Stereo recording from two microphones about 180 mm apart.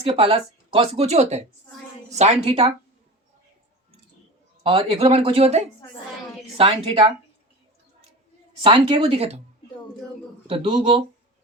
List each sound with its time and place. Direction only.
0.0 s speech: 30° right (ahead or behind)
4.6 s speech: 30° right (ahead or behind)
8.6 s speech: 25° right (ahead or behind)
10.4 s speech: 30° right (ahead or behind)